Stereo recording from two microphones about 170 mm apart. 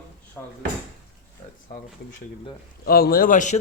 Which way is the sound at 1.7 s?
65° left (ahead or behind).